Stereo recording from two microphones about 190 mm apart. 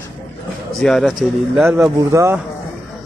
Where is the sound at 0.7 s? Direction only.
Centre (ahead or behind).